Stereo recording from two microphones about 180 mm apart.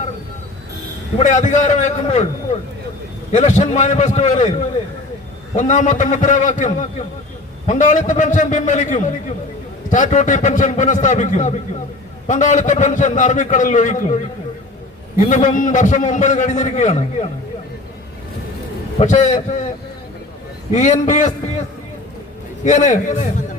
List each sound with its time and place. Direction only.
1.2 s a man's voice: 40° left (ahead or behind)
3.3 s a man's voice: 45° left (ahead or behind)
5.5 s a man's voice: 40° left (ahead or behind)
15.2 s a man's voice: 40° left (ahead or behind)
18.9 s a man's voice: 40° left (ahead or behind)
20.7 s a man's voice: 40° left (ahead or behind)
22.6 s a man's voice: 45° left (ahead or behind)